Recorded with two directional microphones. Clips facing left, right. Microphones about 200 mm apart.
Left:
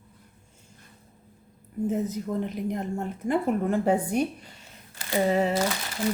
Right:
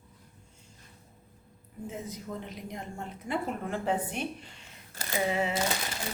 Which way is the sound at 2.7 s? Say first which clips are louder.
Left 10 dB; 50° left (ahead or behind).